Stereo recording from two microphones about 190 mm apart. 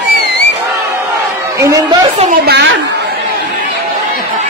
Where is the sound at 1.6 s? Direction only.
15° right (ahead or behind).